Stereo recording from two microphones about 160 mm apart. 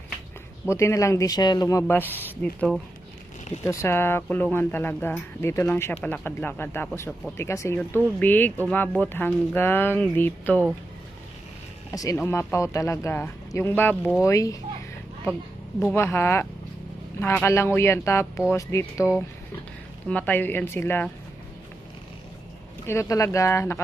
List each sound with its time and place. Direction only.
0.7 s speech: 15° left (ahead or behind)
3.7 s speech: 15° left (ahead or behind)
11.9 s speech: 20° left (ahead or behind)
16.0 s speech: 15° left (ahead or behind)
20.1 s speech: 10° left (ahead or behind)
22.9 s speech: 20° left (ahead or behind)